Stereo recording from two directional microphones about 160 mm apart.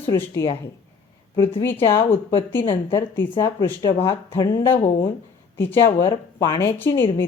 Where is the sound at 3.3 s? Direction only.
30° left (ahead or behind).